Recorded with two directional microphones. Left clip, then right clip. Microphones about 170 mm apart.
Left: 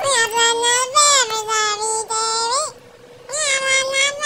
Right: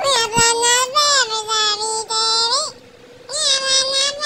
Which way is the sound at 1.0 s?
50° left (ahead or behind).